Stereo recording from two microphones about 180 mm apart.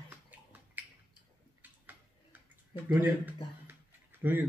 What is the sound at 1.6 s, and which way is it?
Tick-tock, 10° right (ahead or behind).